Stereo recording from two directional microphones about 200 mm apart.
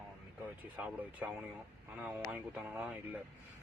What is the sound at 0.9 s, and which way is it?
Speech, 5° right (ahead or behind).